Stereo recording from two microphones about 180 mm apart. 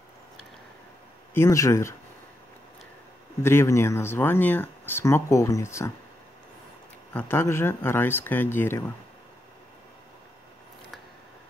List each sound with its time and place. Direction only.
1.3 s speech: 15° left (ahead or behind)
3.4 s speech: 15° left (ahead or behind)
7.2 s speech: 10° left (ahead or behind)